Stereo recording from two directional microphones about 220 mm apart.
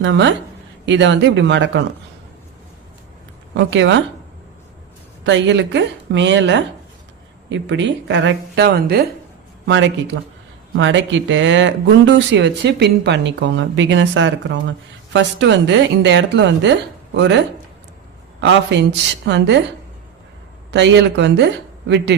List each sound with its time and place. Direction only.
0.0 s speech: 55° right (ahead or behind)
3.5 s speech: 55° right (ahead or behind)
5.2 s speech: 55° right (ahead or behind)
9.6 s speech: 55° right (ahead or behind)
20.7 s speech: 50° right (ahead or behind)